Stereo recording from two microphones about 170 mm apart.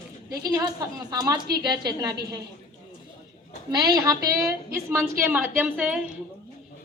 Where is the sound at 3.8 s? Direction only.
25° right (ahead or behind).